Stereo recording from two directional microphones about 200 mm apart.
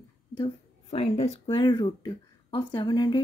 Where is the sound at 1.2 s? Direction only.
30° left (ahead or behind).